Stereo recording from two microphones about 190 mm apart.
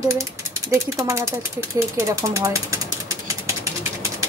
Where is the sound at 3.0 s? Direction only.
15° right (ahead or behind).